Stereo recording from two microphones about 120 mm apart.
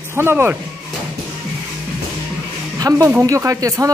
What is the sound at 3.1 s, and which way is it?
Speech, 20° right (ahead or behind).